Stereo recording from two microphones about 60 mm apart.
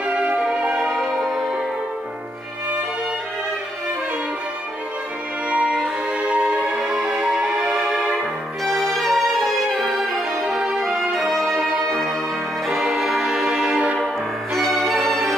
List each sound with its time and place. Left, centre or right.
0.0 s music: centre
5.5 s music: centre
5.8 s violin: centre
6.7 s music: centre
10.4 s music: centre
11.1 s brass instrument: centre
12.6 s music: centre